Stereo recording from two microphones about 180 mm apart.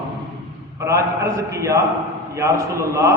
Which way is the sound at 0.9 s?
15° right (ahead or behind).